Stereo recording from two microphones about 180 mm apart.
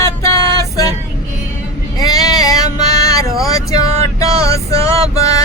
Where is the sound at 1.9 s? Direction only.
20° left (ahead or behind).